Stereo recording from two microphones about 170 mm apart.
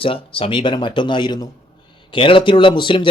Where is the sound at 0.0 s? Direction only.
30° left (ahead or behind).